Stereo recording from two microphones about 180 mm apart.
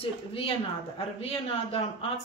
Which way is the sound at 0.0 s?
30° left (ahead or behind).